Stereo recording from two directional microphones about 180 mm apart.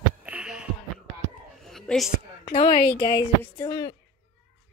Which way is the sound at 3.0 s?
20° left (ahead or behind).